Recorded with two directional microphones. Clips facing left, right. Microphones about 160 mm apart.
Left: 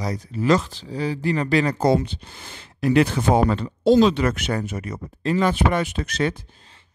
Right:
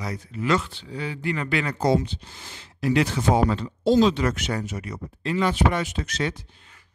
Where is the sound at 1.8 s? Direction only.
55° left (ahead or behind).